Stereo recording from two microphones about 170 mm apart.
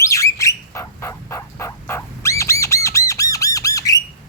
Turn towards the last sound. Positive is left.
turn(degrees=20)  # may be behind; listen again after turning